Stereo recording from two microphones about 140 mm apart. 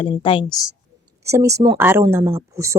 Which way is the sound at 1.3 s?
20° right (ahead or behind).